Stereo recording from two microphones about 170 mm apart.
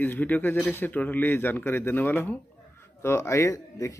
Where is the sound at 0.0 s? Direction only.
10° left (ahead or behind).